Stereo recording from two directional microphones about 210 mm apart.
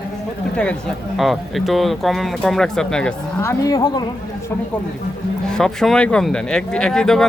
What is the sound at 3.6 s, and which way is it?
Speech, 15° left (ahead or behind).